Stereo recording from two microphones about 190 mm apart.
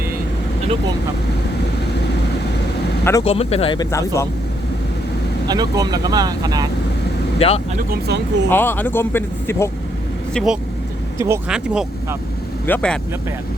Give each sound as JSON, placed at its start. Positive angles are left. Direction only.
{"t": 3.0, "sound": "speech", "side_deg": 15}
{"t": 3.2, "sound": "speech", "side_deg": 30}
{"t": 3.9, "sound": "speech", "side_deg": 15}
{"t": 5.5, "sound": "speech", "side_deg": -20}
{"t": 7.3, "sound": "speech", "side_deg": 30}
{"t": 7.8, "sound": "speech", "side_deg": -55}
{"t": 8.4, "sound": "speech", "side_deg": 10}
{"t": 10.3, "sound": "speech", "side_deg": -5}
{"t": 11.2, "sound": "speech", "side_deg": -15}
{"t": 11.5, "sound": "speech", "side_deg": -5}
{"t": 12.6, "sound": "speech", "side_deg": 5}